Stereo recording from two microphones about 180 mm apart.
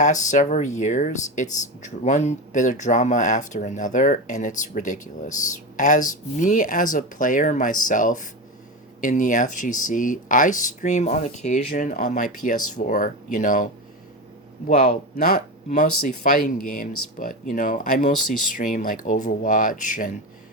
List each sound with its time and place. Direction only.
0.0 s speech: 45° left (ahead or behind)
14.7 s speech: 55° left (ahead or behind)
16.5 s speech: 50° left (ahead or behind)